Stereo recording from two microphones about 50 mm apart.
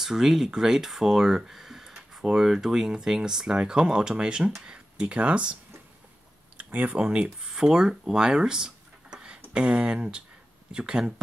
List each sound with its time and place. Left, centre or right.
0.0 s speech: centre